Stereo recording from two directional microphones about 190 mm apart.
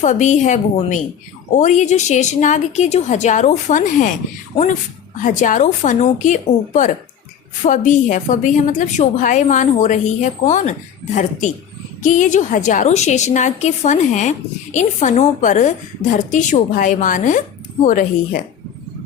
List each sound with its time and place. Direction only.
0.0 s a woman's voice: 40° left (ahead or behind)